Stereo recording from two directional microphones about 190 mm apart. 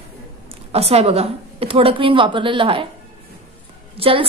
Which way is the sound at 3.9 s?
30° right (ahead or behind).